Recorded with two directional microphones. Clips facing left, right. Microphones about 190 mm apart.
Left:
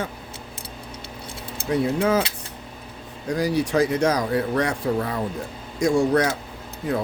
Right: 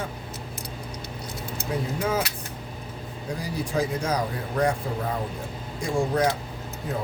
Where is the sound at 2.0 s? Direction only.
90° left.